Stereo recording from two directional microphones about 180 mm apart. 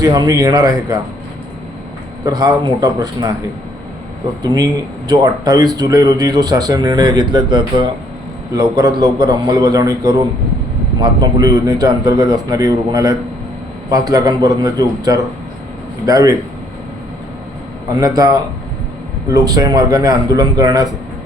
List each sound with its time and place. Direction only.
0.0 s speech: 20° right (ahead or behind)
2.2 s speech: 20° right (ahead or behind)
5.0 s speech: 20° right (ahead or behind)
18.0 s speech: 20° right (ahead or behind)